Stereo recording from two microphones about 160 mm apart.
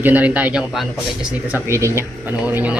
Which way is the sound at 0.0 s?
10° right (ahead or behind).